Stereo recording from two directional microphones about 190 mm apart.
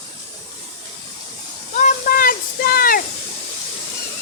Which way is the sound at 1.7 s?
45° left (ahead or behind).